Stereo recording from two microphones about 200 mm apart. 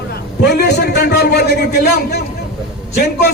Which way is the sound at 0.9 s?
50° left (ahead or behind).